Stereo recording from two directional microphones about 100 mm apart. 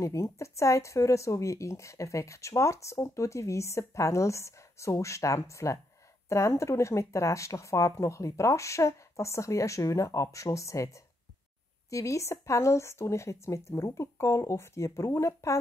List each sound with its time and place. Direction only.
0.0 s speech: 30° left (ahead or behind)